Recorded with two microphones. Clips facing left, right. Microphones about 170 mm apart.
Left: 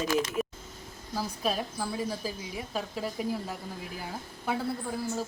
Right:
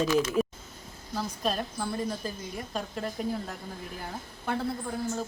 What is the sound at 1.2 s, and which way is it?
A woman's voice, 5° left (ahead or behind).